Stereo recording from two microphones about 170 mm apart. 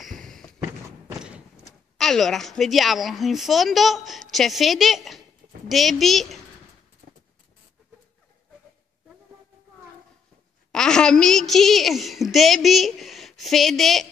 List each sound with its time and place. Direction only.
0.2 s a sound: centre (ahead or behind)
1.0 s horse: 5° right (ahead or behind)
2.0 s a woman's voice: centre (ahead or behind)
10.7 s a woman's voice: 5° left (ahead or behind)